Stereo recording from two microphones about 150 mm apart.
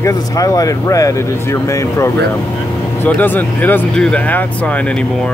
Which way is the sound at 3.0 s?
10° left (ahead or behind).